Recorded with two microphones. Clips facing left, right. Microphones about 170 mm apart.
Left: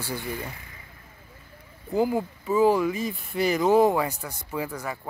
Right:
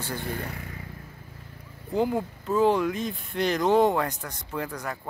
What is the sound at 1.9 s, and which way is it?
Speech, 5° left (ahead or behind).